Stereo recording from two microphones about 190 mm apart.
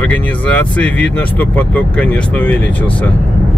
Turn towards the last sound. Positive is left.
turn(degrees=10)  # may be behind; listen again after turning